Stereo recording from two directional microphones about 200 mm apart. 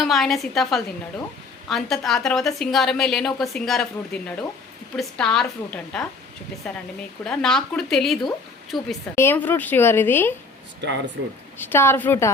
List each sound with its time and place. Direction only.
0.0 s a woman's voice: centre (ahead or behind)
9.1 s a woman's voice: 10° left (ahead or behind)
10.8 s speech: 60° right (ahead or behind)
11.5 s a woman's voice: 10° left (ahead or behind)